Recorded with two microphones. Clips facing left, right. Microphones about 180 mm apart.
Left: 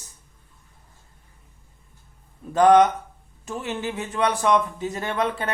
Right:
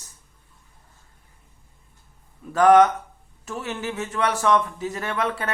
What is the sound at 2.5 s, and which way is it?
Speech, 20° left (ahead or behind).